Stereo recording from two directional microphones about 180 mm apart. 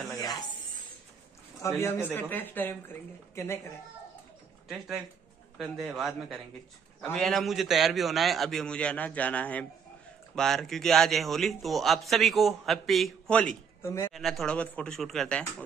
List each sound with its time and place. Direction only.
1.6 s speech: 15° left (ahead or behind)
4.6 s a man's voice: centre (ahead or behind); by 14.1 s 15° left (ahead or behind)
14.1 s a man's voice: centre (ahead or behind)